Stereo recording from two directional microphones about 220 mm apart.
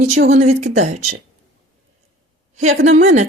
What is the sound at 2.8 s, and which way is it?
Speech, 35° right (ahead or behind).